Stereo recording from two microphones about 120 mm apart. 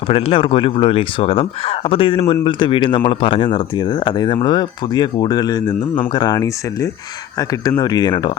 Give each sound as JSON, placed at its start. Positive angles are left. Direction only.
{"t": 0.1, "sound": "speech", "side_deg": 50}